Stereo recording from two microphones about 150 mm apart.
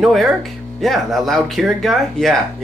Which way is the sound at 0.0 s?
Centre (ahead or behind).